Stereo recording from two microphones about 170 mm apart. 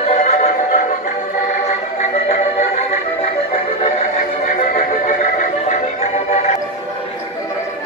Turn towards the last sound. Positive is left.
turn(degrees=40)  # may be behind; listen again after turning